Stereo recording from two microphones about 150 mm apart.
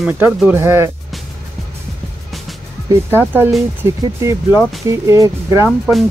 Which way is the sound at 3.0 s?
15° right (ahead or behind).